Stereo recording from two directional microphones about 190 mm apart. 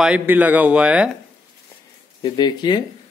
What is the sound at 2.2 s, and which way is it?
Speech, 20° left (ahead or behind).